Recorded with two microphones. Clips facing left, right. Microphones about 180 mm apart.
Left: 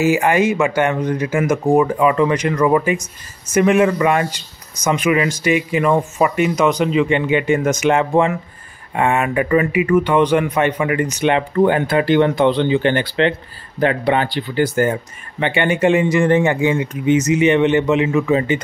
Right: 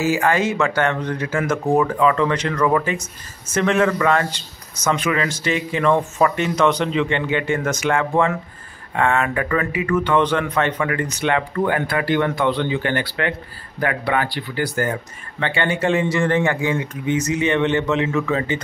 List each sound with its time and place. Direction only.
0.0 s speech: 15° left (ahead or behind)